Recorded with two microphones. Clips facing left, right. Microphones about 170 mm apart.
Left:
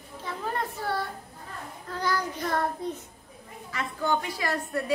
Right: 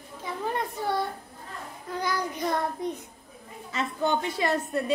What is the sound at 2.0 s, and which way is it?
Child singing, 15° right (ahead or behind).